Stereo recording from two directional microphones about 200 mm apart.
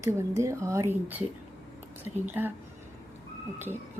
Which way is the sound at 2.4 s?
10° right (ahead or behind).